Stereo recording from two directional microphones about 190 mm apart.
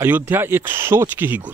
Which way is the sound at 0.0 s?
10° right (ahead or behind).